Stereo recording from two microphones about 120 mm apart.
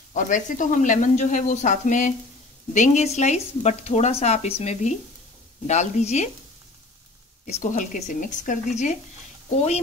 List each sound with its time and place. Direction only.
0.1 s speech: 90° left; by 4.9 s 60° left (ahead or behind)
5.7 s speech: 70° left (ahead or behind)
7.4 s speech: 75° left (ahead or behind)